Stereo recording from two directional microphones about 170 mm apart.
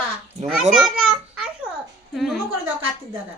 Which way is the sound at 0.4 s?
5° right (ahead or behind).